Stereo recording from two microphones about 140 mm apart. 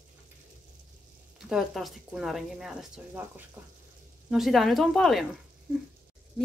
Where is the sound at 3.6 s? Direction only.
15° right (ahead or behind).